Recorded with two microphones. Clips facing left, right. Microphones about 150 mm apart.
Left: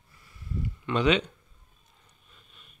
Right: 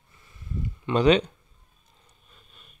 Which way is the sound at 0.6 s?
35° right (ahead or behind).